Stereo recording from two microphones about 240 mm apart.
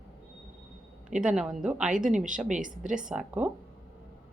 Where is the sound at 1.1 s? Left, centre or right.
Centre.